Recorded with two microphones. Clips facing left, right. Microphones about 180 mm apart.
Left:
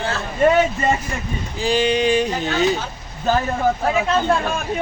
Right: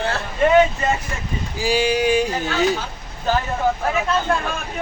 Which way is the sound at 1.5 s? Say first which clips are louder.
Left 1 dB; 10° right (ahead or behind).